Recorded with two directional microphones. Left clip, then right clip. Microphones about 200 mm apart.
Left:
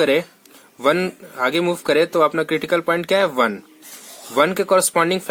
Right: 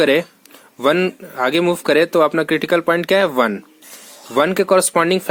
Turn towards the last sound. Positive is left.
turn(degrees=-30)  # may be behind; listen again after turning